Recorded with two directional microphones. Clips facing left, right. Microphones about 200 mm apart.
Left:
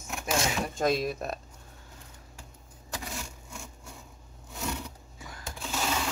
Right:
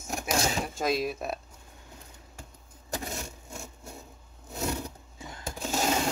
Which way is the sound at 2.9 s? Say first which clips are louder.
Right 3 dB; 45° right (ahead or behind).